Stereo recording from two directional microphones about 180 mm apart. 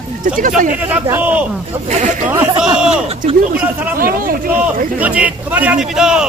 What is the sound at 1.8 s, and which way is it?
Speech, 40° right (ahead or behind).